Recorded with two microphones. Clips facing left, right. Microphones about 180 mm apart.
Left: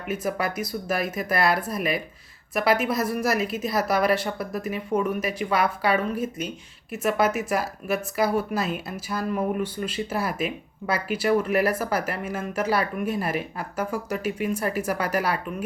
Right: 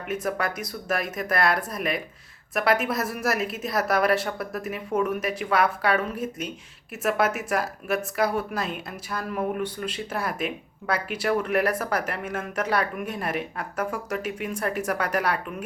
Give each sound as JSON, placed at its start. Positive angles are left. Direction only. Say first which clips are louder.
{"t": 0.1, "sound": "speech", "louder": "left 1 dB", "side_deg": 0}